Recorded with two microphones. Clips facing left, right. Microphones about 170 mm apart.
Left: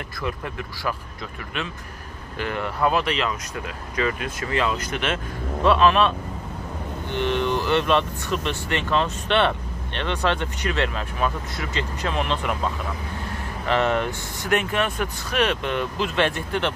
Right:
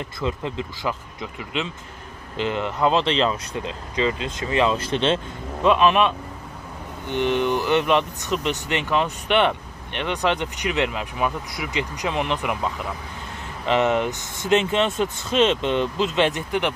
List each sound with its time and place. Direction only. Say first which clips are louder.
0.2 s speech: right 3 dB; 20° right (ahead or behind)
2.3 s speech: right 3 dB; 20° right (ahead or behind)
5.6 s speech: even; 15° right (ahead or behind)